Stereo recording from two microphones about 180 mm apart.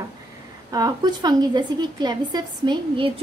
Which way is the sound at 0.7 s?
20° right (ahead or behind).